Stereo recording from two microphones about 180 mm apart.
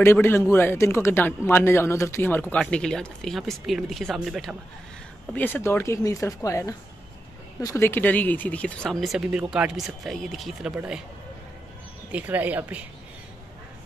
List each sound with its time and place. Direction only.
0.0 s speech: 15° left (ahead or behind)
5.3 s speech: 10° left (ahead or behind)
12.1 s speech: 10° right (ahead or behind)